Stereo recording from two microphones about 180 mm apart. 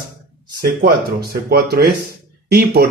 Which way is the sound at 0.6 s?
60° right (ahead or behind).